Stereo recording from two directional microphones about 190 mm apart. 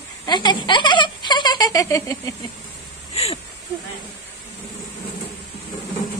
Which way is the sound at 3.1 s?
30° left (ahead or behind).